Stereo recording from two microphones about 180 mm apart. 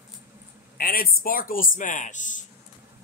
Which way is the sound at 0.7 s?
55° left (ahead or behind).